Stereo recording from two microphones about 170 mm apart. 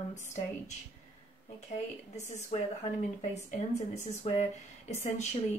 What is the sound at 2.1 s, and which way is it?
A woman's voice, 45° left (ahead or behind).